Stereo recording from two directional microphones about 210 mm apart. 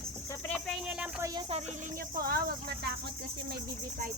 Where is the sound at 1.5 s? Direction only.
30° right (ahead or behind).